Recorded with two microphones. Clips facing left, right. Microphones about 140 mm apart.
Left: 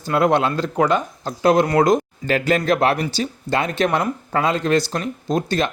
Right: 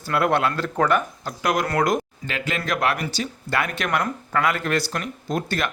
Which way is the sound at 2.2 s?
40° left (ahead or behind).